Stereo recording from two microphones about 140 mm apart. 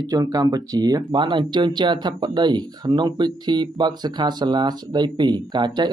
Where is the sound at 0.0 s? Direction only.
25° right (ahead or behind).